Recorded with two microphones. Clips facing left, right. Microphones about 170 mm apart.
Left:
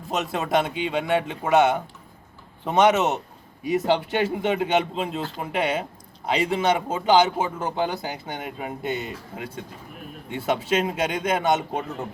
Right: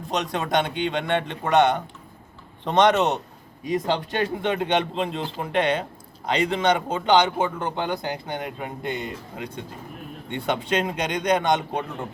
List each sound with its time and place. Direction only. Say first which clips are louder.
0.1 s speech: left 1 dB; 5° left (ahead or behind)